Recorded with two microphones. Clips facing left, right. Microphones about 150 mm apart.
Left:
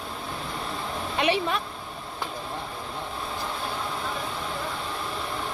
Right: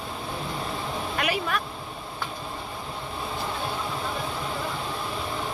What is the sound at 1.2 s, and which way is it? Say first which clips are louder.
Speech: left 4 dB; 25° left (ahead or behind).